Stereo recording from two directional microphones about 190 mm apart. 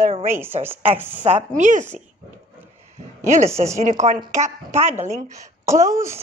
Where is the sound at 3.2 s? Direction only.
35° right (ahead or behind).